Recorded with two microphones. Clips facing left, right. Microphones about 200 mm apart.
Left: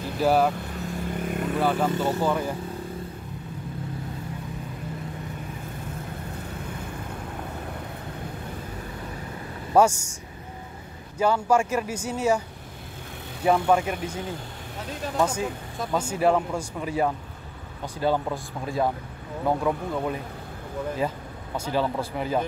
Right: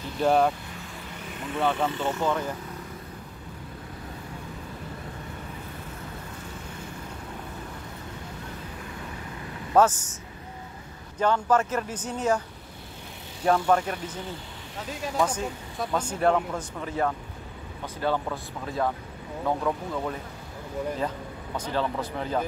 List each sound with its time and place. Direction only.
0.2 s speech: 5° left (ahead or behind)
1.2 s vehicle: 45° left (ahead or behind)
1.6 s speech: 5° left (ahead or behind)
1.9 s speech: 40° left (ahead or behind)
2.2 s speech: 10° left (ahead or behind)
9.8 s speech: 10° left (ahead or behind)
11.1 s speech: 10° left (ahead or behind)
13.7 s speech: 10° left (ahead or behind)
21.7 s speech: 10° left (ahead or behind)